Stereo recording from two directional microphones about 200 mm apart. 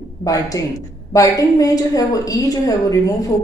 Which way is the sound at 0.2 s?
15° left (ahead or behind).